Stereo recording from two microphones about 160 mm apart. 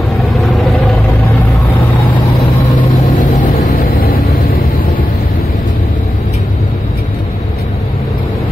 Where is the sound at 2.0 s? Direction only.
30° left (ahead or behind).